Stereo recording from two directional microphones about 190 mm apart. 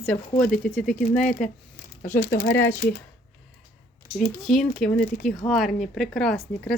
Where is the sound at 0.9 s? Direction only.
45° left (ahead or behind).